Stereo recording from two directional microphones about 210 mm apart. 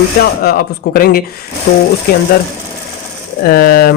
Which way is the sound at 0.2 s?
45° left (ahead or behind).